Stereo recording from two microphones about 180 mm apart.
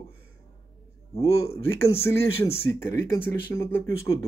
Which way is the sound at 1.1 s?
15° left (ahead or behind).